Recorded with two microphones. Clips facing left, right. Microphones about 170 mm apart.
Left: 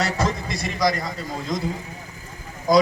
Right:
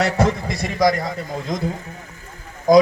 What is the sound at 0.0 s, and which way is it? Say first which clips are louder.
A man's voice: right 5 dB; 60° right (ahead or behind).